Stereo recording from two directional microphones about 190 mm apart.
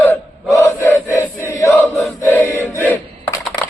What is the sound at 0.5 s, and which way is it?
Chant, 15° left (ahead or behind).